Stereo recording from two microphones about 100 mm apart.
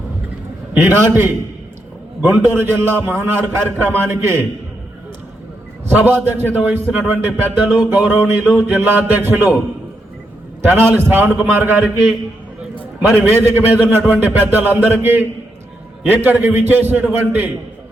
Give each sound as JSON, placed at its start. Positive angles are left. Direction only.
{"t": 0.7, "sound": "a man's voice", "side_deg": -20}
{"t": 6.0, "sound": "a man's voice", "side_deg": -20}
{"t": 10.6, "sound": "a man's voice", "side_deg": -20}
{"t": 13.0, "sound": "a man's voice", "side_deg": -25}